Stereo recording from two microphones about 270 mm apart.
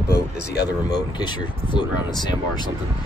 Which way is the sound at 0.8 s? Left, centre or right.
Centre.